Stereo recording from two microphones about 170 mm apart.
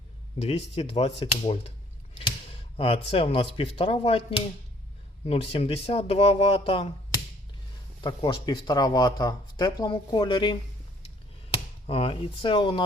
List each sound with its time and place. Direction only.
0.8 s speech: 35° left (ahead or behind)
2.7 s speech: 35° left (ahead or behind)
8.0 s speech: 25° left (ahead or behind)
11.9 s speech: 35° left (ahead or behind)